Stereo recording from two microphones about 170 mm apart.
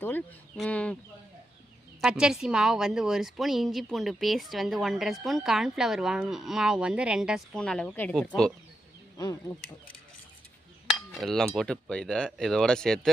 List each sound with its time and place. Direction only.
0.0 s speech: 10° left (ahead or behind)
2.0 s speech: 5° right (ahead or behind)
9.1 s speech: 20° left (ahead or behind)
11.1 s speech: centre (ahead or behind)